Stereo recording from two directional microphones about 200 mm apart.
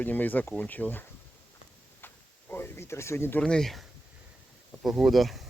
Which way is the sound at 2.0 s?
10° left (ahead or behind).